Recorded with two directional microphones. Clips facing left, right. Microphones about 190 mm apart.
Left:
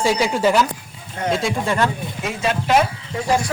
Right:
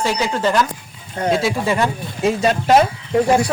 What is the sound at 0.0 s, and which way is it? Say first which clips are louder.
Speech: left 2 dB; 10° left (ahead or behind).